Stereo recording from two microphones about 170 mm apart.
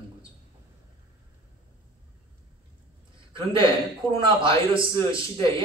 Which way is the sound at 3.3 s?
30° right (ahead or behind).